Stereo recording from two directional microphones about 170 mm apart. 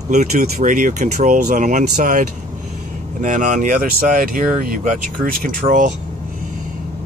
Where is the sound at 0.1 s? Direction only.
45° right (ahead or behind).